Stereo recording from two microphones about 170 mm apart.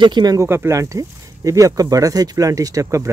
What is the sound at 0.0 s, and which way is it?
Speech, 25° right (ahead or behind).